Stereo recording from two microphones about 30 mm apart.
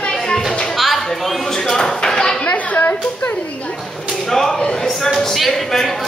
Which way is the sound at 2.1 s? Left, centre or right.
Left.